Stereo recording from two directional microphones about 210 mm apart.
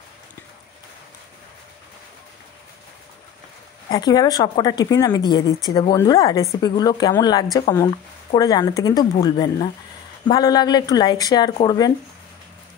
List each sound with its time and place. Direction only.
3.9 s a woman's voice: 20° left (ahead or behind)